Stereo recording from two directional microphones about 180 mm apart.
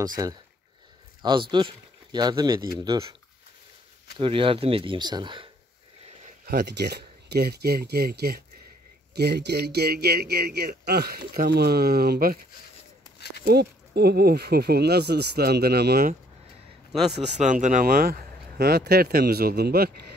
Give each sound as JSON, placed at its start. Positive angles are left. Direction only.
{"t": 0.0, "sound": "speech", "side_deg": -20}
{"t": 1.5, "sound": "speech", "side_deg": -25}
{"t": 4.2, "sound": "speech", "side_deg": -30}
{"t": 6.4, "sound": "a man's voice", "side_deg": -65}
{"t": 13.5, "sound": "a man's voice", "side_deg": -65}
{"t": 17.4, "sound": "a man's voice", "side_deg": -45}